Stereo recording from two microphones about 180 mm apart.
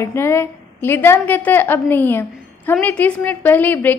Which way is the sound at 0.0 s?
15° left (ahead or behind).